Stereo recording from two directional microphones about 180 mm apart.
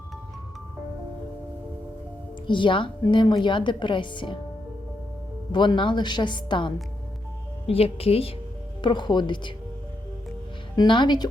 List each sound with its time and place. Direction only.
2.5 s speech: 25° left (ahead or behind)
5.5 s speech: 25° left (ahead or behind)
10.8 s speech: 25° left (ahead or behind)